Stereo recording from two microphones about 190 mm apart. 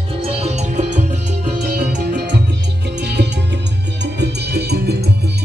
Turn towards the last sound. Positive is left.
turn(degrees=-60)  # may be behind; listen again after turning